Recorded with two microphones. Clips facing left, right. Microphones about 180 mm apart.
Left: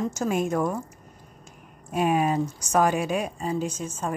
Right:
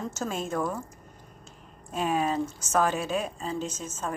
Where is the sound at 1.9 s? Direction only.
15° left (ahead or behind).